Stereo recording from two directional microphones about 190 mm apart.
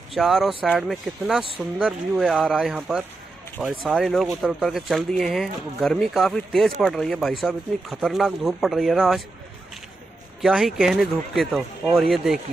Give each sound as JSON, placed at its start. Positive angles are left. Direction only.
{"t": 0.1, "sound": "speech", "side_deg": 0}
{"t": 10.4, "sound": "speech", "side_deg": 0}